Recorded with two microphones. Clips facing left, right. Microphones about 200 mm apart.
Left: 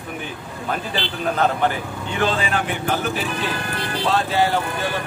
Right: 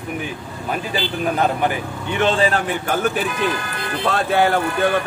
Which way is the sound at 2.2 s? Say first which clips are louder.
Right 4 dB; 35° right (ahead or behind).